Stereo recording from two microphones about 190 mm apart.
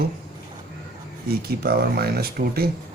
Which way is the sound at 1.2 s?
55° right (ahead or behind).